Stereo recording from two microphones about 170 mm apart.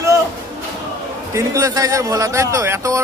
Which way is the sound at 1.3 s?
20° right (ahead or behind).